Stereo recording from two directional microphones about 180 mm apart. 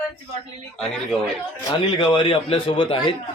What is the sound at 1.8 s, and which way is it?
A man's voice, 25° left (ahead or behind).